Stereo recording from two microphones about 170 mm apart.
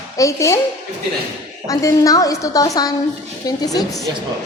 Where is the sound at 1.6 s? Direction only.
20° left (ahead or behind).